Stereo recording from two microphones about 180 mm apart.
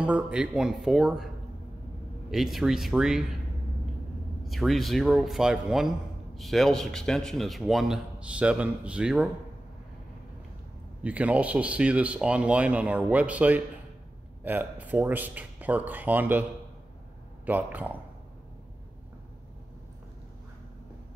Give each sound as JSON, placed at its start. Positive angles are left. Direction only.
{"t": 0.0, "sound": "a man's voice", "side_deg": -5}
{"t": 2.3, "sound": "a man's voice", "side_deg": 0}
{"t": 4.5, "sound": "a man's voice", "side_deg": 0}
{"t": 11.0, "sound": "speech", "side_deg": -5}
{"t": 17.5, "sound": "speech", "side_deg": -10}